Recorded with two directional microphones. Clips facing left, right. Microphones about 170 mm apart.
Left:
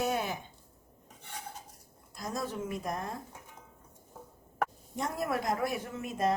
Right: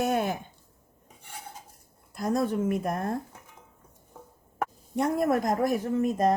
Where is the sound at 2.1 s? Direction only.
60° right (ahead or behind).